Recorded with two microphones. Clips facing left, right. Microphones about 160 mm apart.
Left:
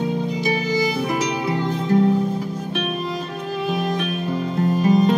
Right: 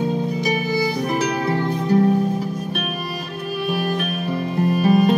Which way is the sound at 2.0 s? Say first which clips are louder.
Right 1 dB; 15° right (ahead or behind).